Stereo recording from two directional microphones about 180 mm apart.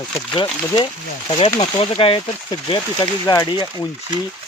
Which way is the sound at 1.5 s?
30° left (ahead or behind).